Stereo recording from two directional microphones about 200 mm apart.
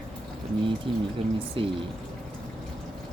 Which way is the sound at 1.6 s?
25° right (ahead or behind).